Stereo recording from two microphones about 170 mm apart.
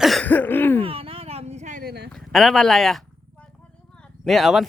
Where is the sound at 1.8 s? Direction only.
75° right (ahead or behind).